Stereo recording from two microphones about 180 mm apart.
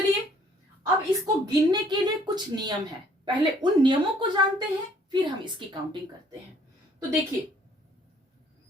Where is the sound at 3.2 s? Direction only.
25° right (ahead or behind).